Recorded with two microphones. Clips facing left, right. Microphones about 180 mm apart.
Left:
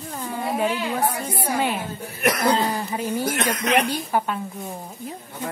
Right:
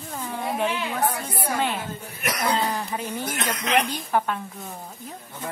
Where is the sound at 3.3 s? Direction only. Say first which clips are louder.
Left 4 dB; 50° left (ahead or behind).